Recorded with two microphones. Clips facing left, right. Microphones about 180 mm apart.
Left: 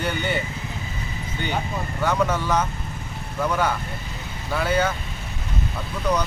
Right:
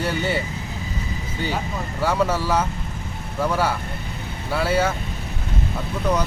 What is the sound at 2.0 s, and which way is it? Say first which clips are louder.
Speech: right 1 dB; 5° right (ahead or behind).